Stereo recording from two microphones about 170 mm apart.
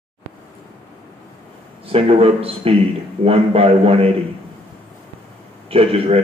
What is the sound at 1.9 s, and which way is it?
A man's voice, 35° right (ahead or behind).